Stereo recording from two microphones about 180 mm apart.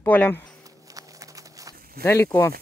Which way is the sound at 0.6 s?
20° right (ahead or behind).